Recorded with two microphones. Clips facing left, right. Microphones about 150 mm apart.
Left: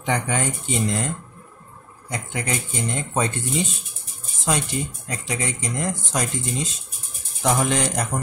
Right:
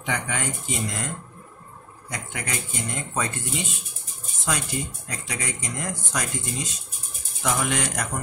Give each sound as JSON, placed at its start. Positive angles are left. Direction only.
{"t": 0.0, "sound": "speech", "side_deg": 35}
{"t": 2.0, "sound": "speech", "side_deg": 30}